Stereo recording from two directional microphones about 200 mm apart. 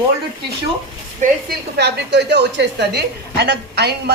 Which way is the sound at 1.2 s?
40° right (ahead or behind).